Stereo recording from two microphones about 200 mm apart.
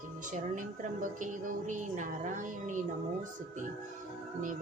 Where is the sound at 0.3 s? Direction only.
40° right (ahead or behind).